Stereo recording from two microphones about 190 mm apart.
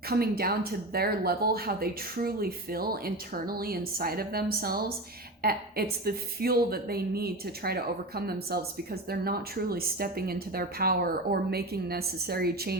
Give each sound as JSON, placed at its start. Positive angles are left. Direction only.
{"t": 0.1, "sound": "a woman's voice", "side_deg": -55}